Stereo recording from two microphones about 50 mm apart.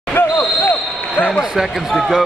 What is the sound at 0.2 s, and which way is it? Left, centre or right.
Basketball bounce, left.